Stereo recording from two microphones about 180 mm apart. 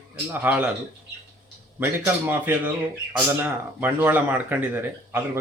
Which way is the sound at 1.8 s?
10° right (ahead or behind).